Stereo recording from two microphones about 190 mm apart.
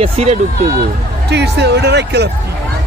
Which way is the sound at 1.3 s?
60° right (ahead or behind).